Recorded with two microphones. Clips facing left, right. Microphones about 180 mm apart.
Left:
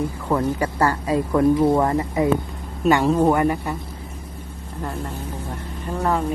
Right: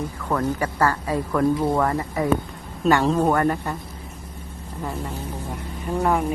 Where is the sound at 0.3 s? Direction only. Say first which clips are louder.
Left 2 dB; 10° left (ahead or behind).